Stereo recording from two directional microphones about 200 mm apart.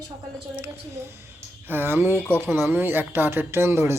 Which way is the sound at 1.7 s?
10° right (ahead or behind).